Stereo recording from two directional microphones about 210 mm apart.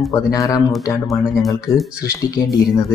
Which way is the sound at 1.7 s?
15° left (ahead or behind).